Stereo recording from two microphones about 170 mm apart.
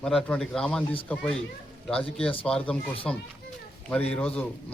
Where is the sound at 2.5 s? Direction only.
5° left (ahead or behind).